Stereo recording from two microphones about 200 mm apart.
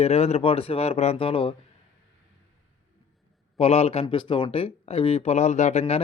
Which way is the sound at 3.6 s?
30° left (ahead or behind).